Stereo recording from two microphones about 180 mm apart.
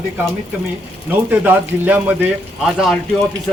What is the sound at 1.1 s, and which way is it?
A man's voice, 10° right (ahead or behind).